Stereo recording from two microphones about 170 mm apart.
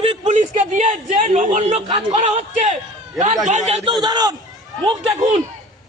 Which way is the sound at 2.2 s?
45° right (ahead or behind).